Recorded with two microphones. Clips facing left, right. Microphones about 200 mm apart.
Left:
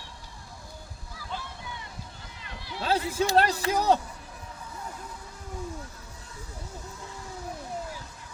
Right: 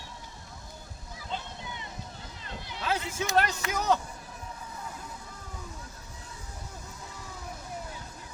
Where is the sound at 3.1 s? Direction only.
35° left (ahead or behind).